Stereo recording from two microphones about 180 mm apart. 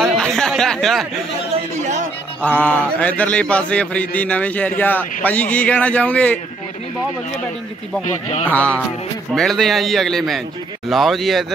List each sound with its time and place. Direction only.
0.0 s a sound: 5° left (ahead or behind)
2.4 s speech: 10° left (ahead or behind)
8.0 s speech: 40° left (ahead or behind)
8.5 s a man's voice: 10° left (ahead or behind)